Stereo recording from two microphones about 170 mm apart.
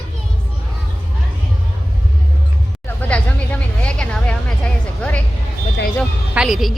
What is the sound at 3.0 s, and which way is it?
Speech, 10° left (ahead or behind).